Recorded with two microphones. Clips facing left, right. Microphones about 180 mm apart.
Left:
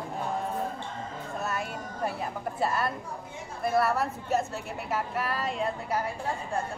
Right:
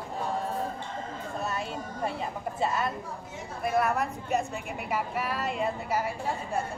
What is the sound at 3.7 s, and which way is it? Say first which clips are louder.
Speech: left 1 dB; 15° right (ahead or behind).